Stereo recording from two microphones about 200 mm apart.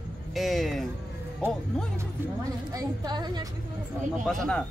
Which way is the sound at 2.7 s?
20° right (ahead or behind).